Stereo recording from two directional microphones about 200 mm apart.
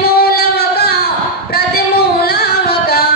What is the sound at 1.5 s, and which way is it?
Singing, 50° left (ahead or behind).